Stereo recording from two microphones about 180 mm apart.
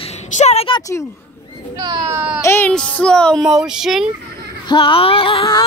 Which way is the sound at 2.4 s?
10° left (ahead or behind).